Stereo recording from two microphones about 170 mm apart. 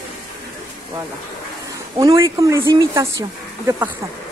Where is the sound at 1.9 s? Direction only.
20° right (ahead or behind).